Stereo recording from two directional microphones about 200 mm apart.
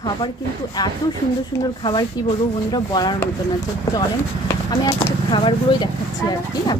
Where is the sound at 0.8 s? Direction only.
20° left (ahead or behind).